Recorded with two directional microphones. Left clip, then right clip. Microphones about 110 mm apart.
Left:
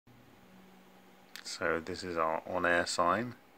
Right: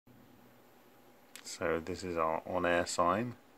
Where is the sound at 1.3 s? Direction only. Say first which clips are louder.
Left 1 dB; 20° right (ahead or behind).